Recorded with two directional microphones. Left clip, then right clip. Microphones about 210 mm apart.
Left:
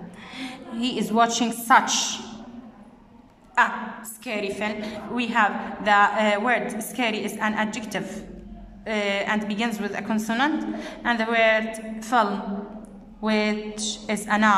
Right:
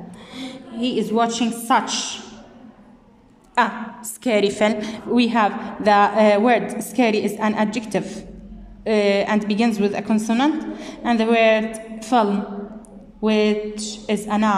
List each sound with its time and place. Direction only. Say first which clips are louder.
0.4 s a woman's voice: right 3 dB; centre (ahead or behind)
3.6 s a woman's voice: right 2 dB; 20° right (ahead or behind)
4.2 s a woman's voice: right 10 dB; 35° right (ahead or behind); by 14.5 s 10° right (ahead or behind)